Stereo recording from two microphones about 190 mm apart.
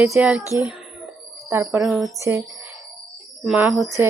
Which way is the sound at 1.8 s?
Centre (ahead or behind).